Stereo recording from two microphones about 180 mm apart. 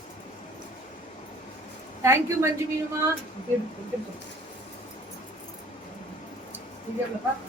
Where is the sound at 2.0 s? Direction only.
15° right (ahead or behind).